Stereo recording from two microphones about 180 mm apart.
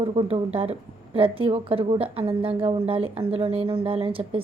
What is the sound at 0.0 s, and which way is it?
A woman's voice, 30° right (ahead or behind).